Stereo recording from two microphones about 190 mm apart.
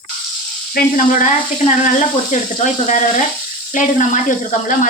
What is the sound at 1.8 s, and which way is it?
Sizzle, 40° left (ahead or behind).